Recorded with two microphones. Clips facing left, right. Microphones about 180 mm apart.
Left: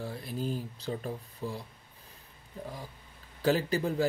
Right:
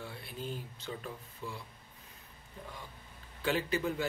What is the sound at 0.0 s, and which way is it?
Speech, 40° left (ahead or behind).